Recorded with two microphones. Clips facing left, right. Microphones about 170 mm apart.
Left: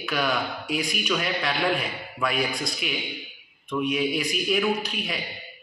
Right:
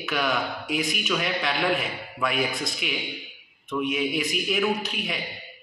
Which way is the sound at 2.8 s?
70° right (ahead or behind).